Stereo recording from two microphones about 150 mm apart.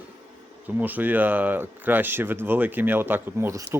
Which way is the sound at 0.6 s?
10° right (ahead or behind).